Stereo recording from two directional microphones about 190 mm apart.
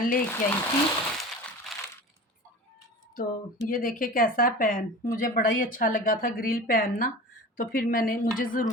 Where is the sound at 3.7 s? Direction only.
45° left (ahead or behind).